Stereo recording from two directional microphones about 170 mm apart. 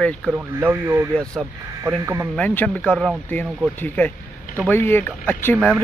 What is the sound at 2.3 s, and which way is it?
Speech, 10° left (ahead or behind).